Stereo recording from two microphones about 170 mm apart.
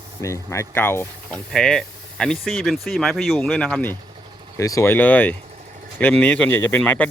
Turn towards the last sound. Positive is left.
turn(degrees=10)  # may be behind; listen again after turning